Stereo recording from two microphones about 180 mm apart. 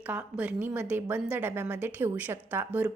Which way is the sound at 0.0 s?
10° right (ahead or behind).